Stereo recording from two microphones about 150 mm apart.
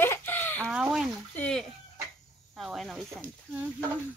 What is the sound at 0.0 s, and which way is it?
Chicken, 15° left (ahead or behind).